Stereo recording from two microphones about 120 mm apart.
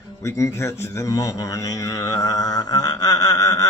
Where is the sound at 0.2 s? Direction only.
25° left (ahead or behind).